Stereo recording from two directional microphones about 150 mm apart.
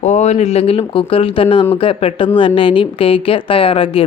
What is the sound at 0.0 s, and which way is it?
A woman's voice, 50° left (ahead or behind).